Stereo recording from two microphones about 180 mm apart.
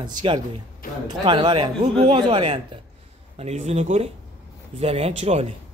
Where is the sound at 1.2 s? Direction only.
25° right (ahead or behind).